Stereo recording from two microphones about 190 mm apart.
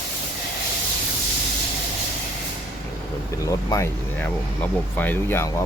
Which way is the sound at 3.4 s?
15° left (ahead or behind).